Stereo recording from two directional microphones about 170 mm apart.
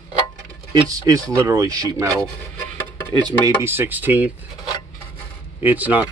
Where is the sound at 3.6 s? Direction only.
10° right (ahead or behind).